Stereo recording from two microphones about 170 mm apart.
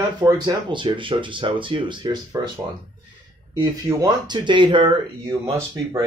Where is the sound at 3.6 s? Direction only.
25° right (ahead or behind).